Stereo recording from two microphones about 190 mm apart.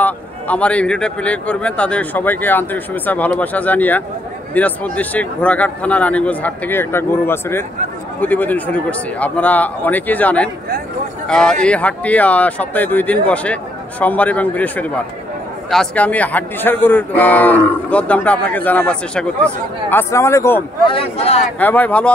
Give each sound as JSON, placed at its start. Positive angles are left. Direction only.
{"t": 0.0, "sound": "a man's voice", "side_deg": 5}
{"t": 20.8, "sound": "speech", "side_deg": 30}
{"t": 21.5, "sound": "a man's voice", "side_deg": 10}